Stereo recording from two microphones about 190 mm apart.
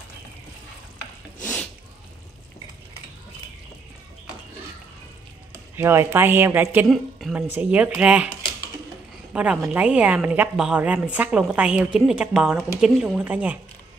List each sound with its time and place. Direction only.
1.4 s a sound: 10° left (ahead or behind)
5.5 s a woman's voice: 10° right (ahead or behind)
9.3 s a woman's voice: 5° right (ahead or behind)